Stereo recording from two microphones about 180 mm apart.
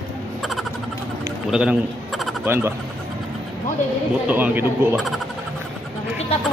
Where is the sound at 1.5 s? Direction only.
5° right (ahead or behind).